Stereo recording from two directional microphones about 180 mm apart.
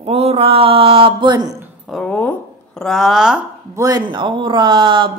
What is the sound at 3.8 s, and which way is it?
Speech, 20° right (ahead or behind).